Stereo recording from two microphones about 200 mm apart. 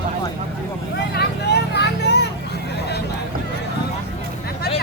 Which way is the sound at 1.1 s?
55° left (ahead or behind).